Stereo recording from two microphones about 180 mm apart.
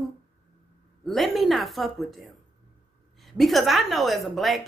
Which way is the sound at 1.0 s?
Centre (ahead or behind).